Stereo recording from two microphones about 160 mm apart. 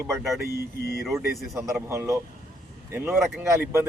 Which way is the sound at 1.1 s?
20° right (ahead or behind).